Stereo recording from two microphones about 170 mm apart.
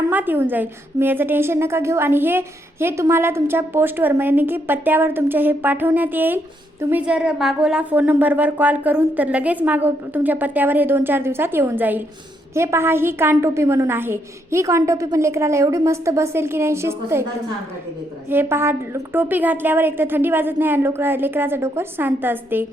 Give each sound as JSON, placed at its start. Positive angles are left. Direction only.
{"t": 0.1, "sound": "a woman's voice", "side_deg": -10}
{"t": 18.3, "sound": "a woman's voice", "side_deg": -15}